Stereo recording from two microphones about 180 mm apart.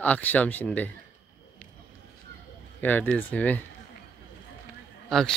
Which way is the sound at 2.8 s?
10° left (ahead or behind).